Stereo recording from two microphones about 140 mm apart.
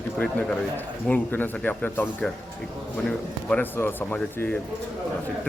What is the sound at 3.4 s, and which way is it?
Speech, 10° left (ahead or behind).